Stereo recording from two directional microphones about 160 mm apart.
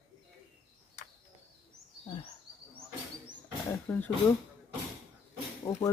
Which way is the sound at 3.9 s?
15° left (ahead or behind).